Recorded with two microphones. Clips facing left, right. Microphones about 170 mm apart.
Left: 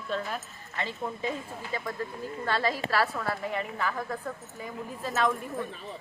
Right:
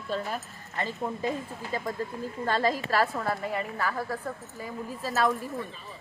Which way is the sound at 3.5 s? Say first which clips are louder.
Right 1 dB; 5° right (ahead or behind).